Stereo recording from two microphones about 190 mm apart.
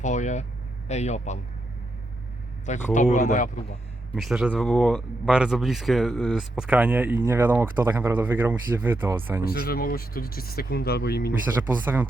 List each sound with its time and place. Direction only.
0.0 s a man's voice: 40° left (ahead or behind)
2.9 s speech: 40° left (ahead or behind)
4.1 s speech: centre (ahead or behind)
9.4 s speech: 50° left (ahead or behind)
11.6 s speech: 10° right (ahead or behind)